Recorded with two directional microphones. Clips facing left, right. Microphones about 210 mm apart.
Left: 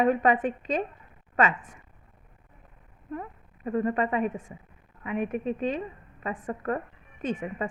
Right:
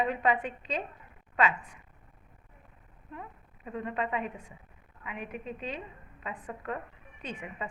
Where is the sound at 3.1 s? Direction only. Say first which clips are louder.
Left 8 dB; 50° left (ahead or behind).